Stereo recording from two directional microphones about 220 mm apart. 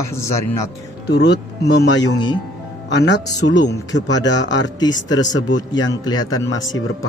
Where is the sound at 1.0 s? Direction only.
50° left (ahead or behind).